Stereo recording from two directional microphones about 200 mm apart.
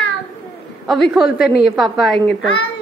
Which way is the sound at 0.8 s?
Centre (ahead or behind).